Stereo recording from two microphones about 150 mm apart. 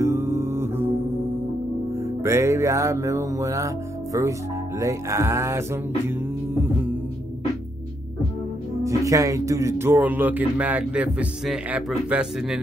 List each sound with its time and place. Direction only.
0.0 s mantra: 15° right (ahead or behind)
2.0 s music: 20° right (ahead or behind)
8.8 s speech: 20° right (ahead or behind); by 12.5 s 5° right (ahead or behind)